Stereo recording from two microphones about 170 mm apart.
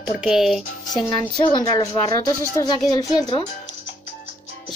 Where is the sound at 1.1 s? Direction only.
25° left (ahead or behind).